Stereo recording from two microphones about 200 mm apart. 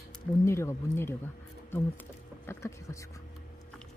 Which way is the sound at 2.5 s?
15° left (ahead or behind).